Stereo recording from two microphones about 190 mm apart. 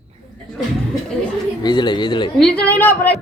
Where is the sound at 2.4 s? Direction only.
5° left (ahead or behind).